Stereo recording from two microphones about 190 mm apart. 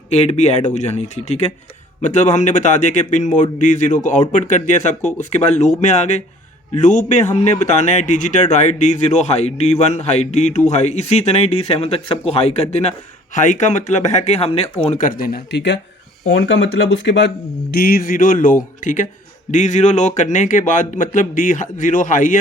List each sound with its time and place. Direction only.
0.1 s a man's voice: 35° left (ahead or behind); by 17.3 s 70° left (ahead or behind)
17.7 s a man's voice: 50° left (ahead or behind)